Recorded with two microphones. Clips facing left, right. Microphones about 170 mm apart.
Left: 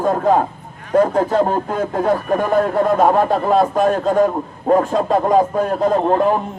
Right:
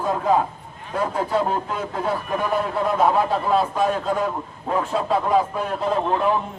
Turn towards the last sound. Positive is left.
turn(degrees=45)  # may be behind; listen again after turning